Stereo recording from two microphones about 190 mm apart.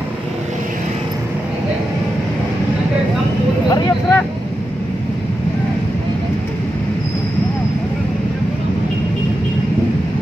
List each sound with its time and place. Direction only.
3.6 s vehicle: 20° left (ahead or behind)